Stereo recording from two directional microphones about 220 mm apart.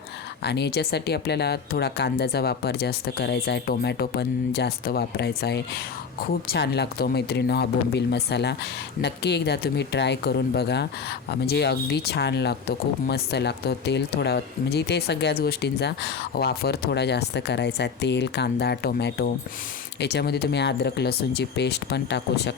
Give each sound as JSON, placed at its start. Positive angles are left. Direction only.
{"t": 0.4, "sound": "speech", "side_deg": 50}